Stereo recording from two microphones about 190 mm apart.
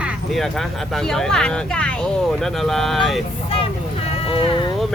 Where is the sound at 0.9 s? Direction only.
Centre (ahead or behind).